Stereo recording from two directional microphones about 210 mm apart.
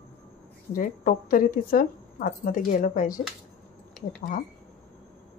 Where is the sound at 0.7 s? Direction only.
40° left (ahead or behind).